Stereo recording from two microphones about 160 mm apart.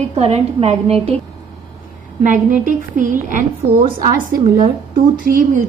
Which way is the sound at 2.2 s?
55° right (ahead or behind).